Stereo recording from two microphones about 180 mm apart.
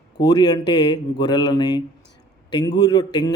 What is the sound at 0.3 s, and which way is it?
Speech, 25° left (ahead or behind).